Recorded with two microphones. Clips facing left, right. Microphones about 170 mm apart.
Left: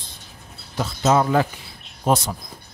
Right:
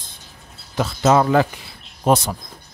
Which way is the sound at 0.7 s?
75° right (ahead or behind).